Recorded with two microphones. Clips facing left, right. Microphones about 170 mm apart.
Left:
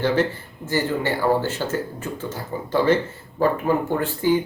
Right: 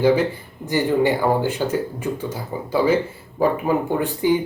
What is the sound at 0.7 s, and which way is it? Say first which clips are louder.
Speech: right 5 dB; 15° right (ahead or behind).